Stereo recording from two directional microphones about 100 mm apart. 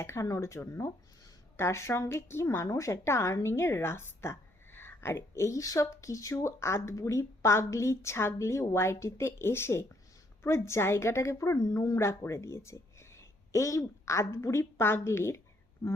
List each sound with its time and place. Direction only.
0.0 s a woman's voice: 30° left (ahead or behind)